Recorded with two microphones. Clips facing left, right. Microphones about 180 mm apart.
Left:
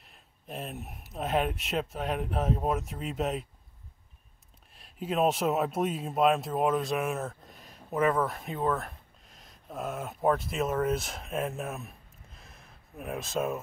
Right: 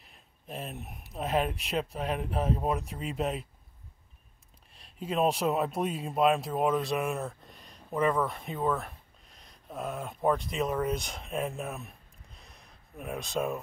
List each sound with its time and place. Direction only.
0.0 s speech: centre (ahead or behind)
4.7 s speech: centre (ahead or behind)